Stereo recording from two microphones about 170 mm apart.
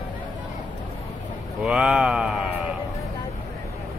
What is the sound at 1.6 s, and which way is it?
Speech, 5° right (ahead or behind).